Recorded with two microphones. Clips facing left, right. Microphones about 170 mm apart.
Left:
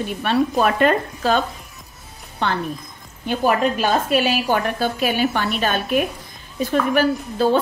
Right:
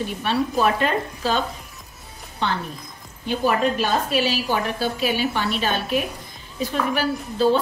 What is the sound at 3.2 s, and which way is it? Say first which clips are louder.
A woman's voice: left 2 dB; 55° left (ahead or behind).